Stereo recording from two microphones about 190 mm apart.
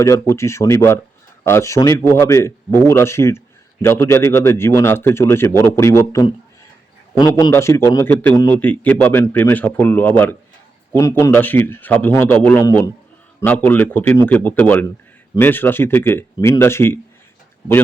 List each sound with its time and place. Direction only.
0.0 s a man's voice: 15° left (ahead or behind)